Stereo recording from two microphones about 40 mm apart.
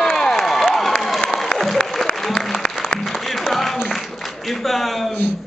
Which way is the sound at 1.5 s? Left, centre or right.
Left.